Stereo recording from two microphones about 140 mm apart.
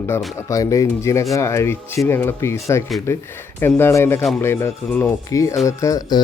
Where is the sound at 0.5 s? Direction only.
25° left (ahead or behind).